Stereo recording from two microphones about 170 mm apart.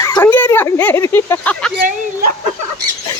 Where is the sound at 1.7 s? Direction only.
60° right (ahead or behind).